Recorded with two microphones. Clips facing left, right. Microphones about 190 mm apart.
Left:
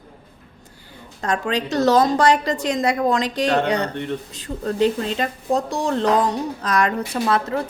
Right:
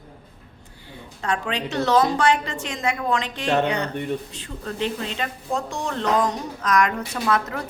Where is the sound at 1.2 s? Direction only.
40° left (ahead or behind).